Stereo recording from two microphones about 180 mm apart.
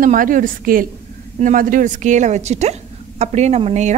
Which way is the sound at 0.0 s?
50° right (ahead or behind).